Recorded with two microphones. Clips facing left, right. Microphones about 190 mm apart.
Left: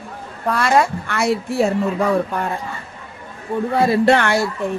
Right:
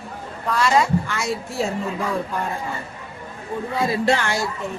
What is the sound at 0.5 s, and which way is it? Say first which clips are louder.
Speech: left 1 dB; 55° left (ahead or behind).